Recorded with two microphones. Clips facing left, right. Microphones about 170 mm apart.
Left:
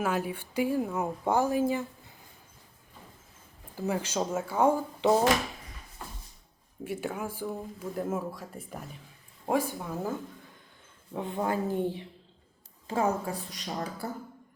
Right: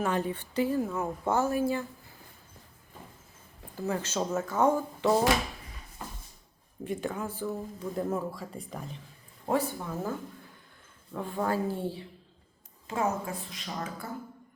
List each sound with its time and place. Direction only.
0.0 s speech: 10° left (ahead or behind)
3.8 s speech: 15° left (ahead or behind)
6.8 s speech: 10° left (ahead or behind)
11.1 s speech: 20° left (ahead or behind)
12.9 s a woman's voice: 30° left (ahead or behind)